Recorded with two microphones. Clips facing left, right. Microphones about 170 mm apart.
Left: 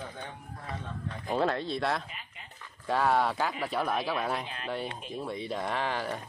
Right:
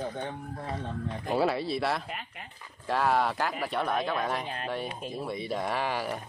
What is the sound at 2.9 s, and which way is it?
Speech, centre (ahead or behind).